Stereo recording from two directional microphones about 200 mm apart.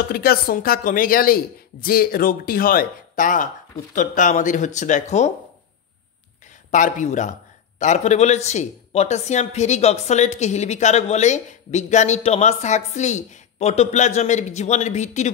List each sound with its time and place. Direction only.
0.1 s a woman's voice: 50° left (ahead or behind)
6.7 s speech: 40° left (ahead or behind)